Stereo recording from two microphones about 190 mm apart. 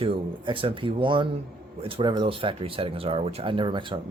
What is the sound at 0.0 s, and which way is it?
Speech, 30° right (ahead or behind).